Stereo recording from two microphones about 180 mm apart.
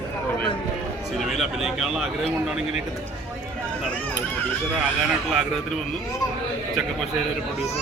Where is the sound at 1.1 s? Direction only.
Centre (ahead or behind).